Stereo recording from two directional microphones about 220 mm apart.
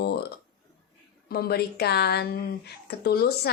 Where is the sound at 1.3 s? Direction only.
45° left (ahead or behind).